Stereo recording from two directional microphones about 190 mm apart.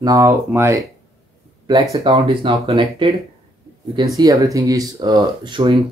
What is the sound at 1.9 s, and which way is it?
Speech, 20° right (ahead or behind).